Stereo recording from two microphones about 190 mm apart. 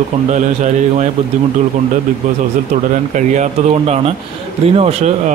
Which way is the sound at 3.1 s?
40° right (ahead or behind).